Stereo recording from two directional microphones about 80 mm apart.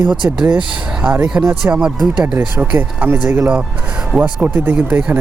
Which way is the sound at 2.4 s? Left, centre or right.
Right.